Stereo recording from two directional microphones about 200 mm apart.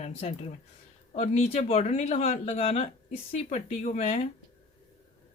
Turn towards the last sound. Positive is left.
turn(degrees=35)  # may be behind; listen again after turning